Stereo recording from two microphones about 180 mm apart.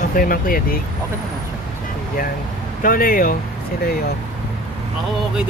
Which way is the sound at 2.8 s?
55° left (ahead or behind).